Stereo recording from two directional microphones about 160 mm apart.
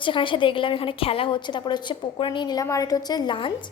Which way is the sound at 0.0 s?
30° left (ahead or behind).